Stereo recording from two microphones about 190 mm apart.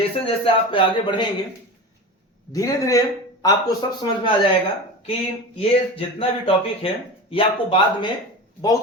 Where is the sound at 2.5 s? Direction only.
15° left (ahead or behind).